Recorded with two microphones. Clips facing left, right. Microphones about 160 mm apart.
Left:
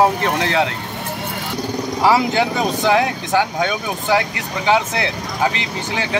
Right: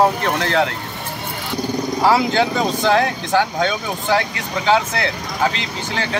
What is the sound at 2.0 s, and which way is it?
Speech, 15° left (ahead or behind).